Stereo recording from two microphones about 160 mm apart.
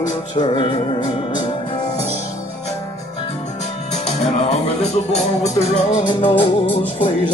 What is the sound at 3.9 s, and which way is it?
Music, 45° left (ahead or behind).